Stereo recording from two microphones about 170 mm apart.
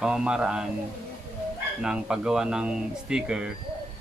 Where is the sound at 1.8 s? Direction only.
5° right (ahead or behind).